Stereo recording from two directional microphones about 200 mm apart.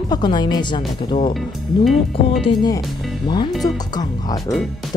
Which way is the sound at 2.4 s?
20° left (ahead or behind).